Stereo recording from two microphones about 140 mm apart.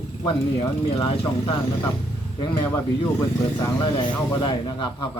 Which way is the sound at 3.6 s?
25° left (ahead or behind).